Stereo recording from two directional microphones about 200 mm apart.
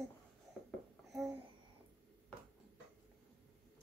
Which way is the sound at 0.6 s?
Centre (ahead or behind).